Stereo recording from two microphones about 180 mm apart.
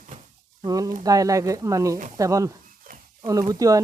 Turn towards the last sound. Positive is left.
turn(degrees=-20)  # may be behind; listen again after turning